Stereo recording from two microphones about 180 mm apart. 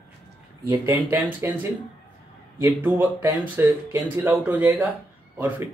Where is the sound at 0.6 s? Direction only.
15° right (ahead or behind).